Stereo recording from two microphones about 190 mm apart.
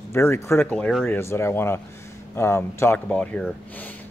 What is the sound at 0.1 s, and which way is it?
A man's voice, 15° left (ahead or behind).